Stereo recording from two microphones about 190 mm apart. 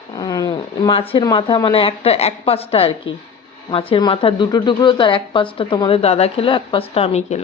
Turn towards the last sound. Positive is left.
turn(degrees=35)  # may be behind; listen again after turning